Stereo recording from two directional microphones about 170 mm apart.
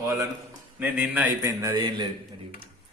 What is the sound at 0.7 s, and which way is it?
A man's voice, 10° right (ahead or behind).